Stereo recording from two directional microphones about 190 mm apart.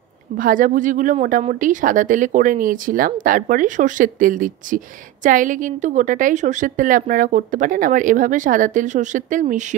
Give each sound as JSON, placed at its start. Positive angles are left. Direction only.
{"t": 0.4, "sound": "speech", "side_deg": -45}